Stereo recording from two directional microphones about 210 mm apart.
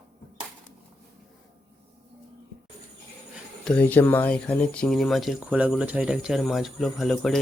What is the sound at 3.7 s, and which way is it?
Speech, 5° left (ahead or behind).